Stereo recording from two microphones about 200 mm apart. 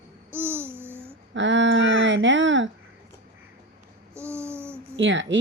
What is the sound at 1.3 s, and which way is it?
Speech, 65° right (ahead or behind).